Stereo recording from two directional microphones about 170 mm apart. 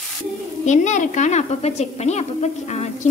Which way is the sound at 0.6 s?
45° left (ahead or behind).